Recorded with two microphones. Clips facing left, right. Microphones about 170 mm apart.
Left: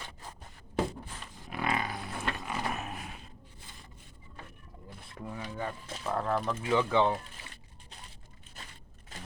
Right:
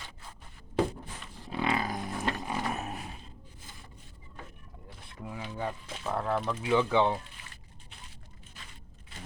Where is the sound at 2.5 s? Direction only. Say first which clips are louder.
Right 2 dB; 25° right (ahead or behind).